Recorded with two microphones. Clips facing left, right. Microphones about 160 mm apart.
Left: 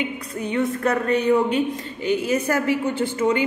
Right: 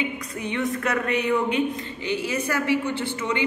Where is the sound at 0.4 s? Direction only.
35° left (ahead or behind).